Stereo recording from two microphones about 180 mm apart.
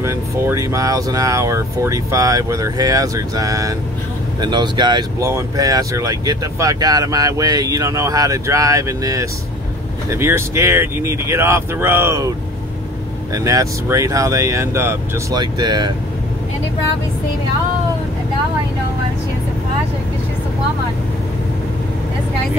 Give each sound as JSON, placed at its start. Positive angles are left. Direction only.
{"t": 0.0, "sound": "speech", "side_deg": -15}
{"t": 13.3, "sound": "speech", "side_deg": -20}